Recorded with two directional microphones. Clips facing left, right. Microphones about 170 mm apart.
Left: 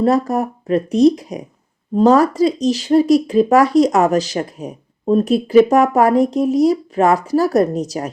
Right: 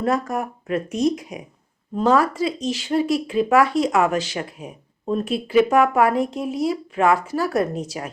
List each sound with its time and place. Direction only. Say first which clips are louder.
0.0 s speech: left 7 dB; 35° left (ahead or behind)